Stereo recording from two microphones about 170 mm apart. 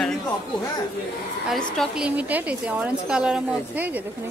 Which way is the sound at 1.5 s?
Centre (ahead or behind).